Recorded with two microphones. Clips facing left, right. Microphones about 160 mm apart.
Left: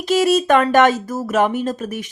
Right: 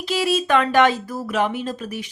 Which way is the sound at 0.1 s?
45° left (ahead or behind).